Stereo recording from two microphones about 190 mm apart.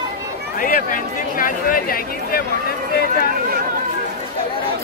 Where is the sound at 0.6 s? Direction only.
45° left (ahead or behind).